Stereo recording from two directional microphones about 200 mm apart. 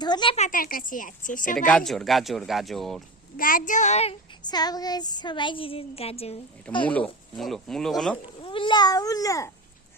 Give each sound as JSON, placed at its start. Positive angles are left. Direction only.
{"t": 0.0, "sound": "a woman's voice", "side_deg": 20}
{"t": 1.5, "sound": "speech", "side_deg": 5}
{"t": 3.3, "sound": "child singing", "side_deg": 45}
{"t": 6.8, "sound": "speech", "side_deg": 5}
{"t": 8.4, "sound": "child singing", "side_deg": 25}